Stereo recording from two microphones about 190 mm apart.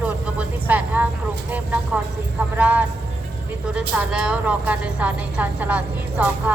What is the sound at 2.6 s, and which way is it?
A woman's voice, 10° right (ahead or behind).